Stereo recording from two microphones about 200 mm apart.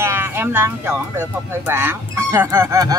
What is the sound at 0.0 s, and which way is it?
Speech, 10° right (ahead or behind).